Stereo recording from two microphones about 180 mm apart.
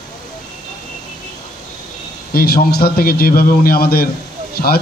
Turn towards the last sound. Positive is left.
turn(degrees=60)  # may be behind; listen again after turning